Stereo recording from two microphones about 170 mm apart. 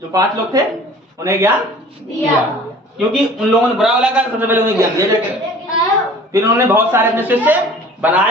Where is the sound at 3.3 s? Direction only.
5° right (ahead or behind).